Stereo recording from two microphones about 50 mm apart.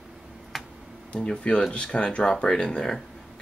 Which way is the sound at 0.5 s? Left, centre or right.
Centre.